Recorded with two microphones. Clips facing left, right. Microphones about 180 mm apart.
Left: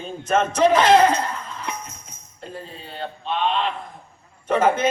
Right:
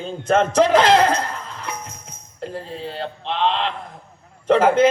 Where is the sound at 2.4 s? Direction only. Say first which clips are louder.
Right 6 dB; 90° right.